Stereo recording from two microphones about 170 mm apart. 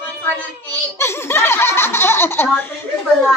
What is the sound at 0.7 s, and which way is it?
Speech, 15° left (ahead or behind).